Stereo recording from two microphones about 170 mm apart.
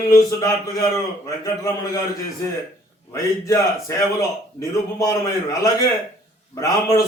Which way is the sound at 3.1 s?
20° left (ahead or behind).